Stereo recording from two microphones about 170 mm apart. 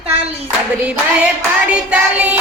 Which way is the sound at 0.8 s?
5° right (ahead or behind).